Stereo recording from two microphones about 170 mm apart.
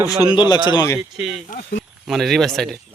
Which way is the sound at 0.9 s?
Centre (ahead or behind).